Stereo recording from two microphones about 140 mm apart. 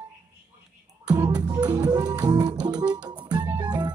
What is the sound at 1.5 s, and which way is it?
Music, 30° right (ahead or behind).